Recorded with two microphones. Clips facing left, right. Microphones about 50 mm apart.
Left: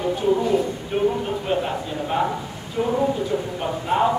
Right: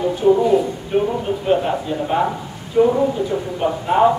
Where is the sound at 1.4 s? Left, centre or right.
Centre.